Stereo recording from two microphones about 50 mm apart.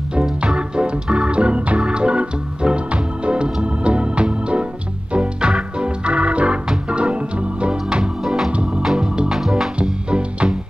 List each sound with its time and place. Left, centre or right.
0.1 s music: right
0.6 s organ: centre
7.9 s music: centre
8.5 s organ: right
9.3 s music: centre
10.0 s music: centre